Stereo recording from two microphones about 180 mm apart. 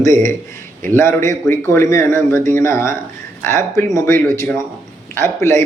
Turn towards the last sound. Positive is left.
turn(degrees=15)  # may be behind; listen again after turning